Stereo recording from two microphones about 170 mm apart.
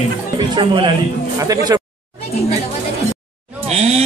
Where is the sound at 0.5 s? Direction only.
25° right (ahead or behind).